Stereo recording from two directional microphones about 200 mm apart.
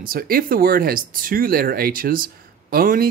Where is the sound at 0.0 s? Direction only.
45° right (ahead or behind).